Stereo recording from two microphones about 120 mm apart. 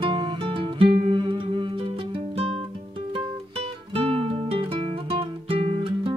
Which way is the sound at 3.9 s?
50° right (ahead or behind).